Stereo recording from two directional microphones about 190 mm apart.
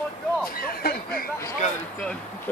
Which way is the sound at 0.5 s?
50° left (ahead or behind).